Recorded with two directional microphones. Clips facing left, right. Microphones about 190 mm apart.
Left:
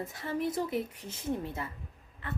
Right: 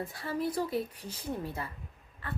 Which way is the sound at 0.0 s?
20° left (ahead or behind).